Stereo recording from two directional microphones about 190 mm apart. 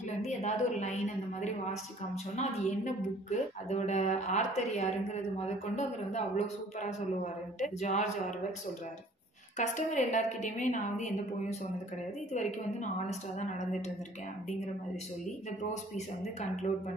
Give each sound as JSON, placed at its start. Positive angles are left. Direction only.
{"t": 0.2, "sound": "a sound", "side_deg": 35}
{"t": 2.3, "sound": "a woman's voice", "side_deg": 40}
{"t": 9.6, "sound": "a woman's voice", "side_deg": 40}